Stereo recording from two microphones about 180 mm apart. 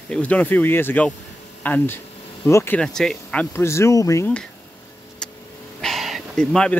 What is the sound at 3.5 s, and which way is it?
Speech, 15° left (ahead or behind).